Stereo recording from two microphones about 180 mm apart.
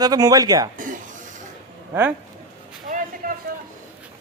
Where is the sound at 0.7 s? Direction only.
45° right (ahead or behind).